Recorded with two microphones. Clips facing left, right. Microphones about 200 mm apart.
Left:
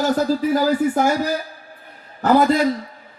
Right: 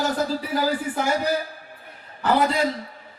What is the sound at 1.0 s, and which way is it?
Speech, 45° left (ahead or behind).